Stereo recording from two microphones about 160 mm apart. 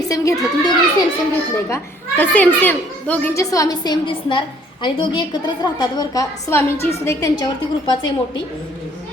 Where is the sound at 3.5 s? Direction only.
20° left (ahead or behind).